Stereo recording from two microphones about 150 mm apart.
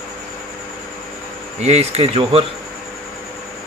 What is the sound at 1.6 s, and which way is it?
Speech, 45° right (ahead or behind).